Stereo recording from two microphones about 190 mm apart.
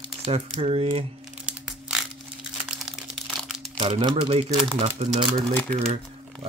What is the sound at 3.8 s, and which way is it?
Speech, 30° right (ahead or behind).